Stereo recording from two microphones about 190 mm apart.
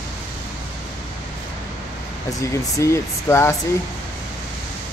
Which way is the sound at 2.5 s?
15° left (ahead or behind).